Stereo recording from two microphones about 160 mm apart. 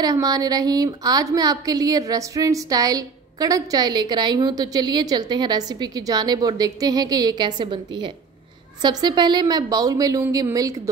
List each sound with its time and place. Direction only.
0.0 s a woman's voice: 25° right (ahead or behind)